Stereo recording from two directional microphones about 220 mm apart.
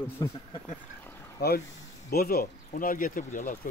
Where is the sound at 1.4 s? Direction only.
50° left (ahead or behind).